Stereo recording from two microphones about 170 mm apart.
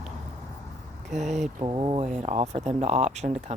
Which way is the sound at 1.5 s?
30° right (ahead or behind).